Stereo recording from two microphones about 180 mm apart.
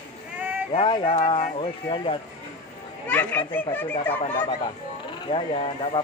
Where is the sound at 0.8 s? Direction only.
25° left (ahead or behind).